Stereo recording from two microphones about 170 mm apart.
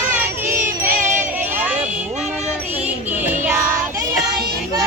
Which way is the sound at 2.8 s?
10° right (ahead or behind).